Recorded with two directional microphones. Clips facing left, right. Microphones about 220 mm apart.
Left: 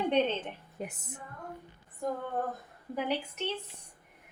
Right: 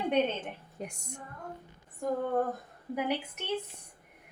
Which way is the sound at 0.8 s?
5° left (ahead or behind).